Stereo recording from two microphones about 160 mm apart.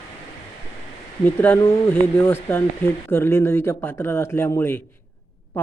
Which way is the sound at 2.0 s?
15° left (ahead or behind).